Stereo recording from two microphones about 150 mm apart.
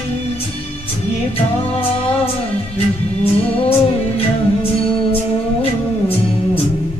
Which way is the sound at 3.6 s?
40° left (ahead or behind).